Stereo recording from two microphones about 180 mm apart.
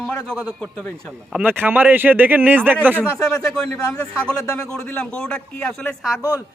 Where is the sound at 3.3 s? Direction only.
5° left (ahead or behind).